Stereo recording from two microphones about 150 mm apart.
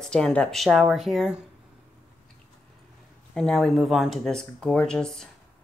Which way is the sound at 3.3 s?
5° left (ahead or behind).